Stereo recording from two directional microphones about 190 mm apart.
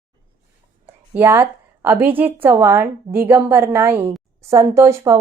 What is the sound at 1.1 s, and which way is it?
A woman's voice, 10° right (ahead or behind).